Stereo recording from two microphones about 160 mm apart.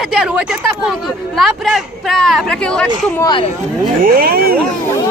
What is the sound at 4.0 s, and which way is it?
Speech, 65° right (ahead or behind).